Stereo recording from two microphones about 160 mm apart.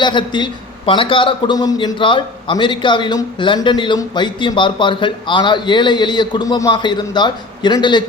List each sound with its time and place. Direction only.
0.0 s a man's voice: 30° left (ahead or behind)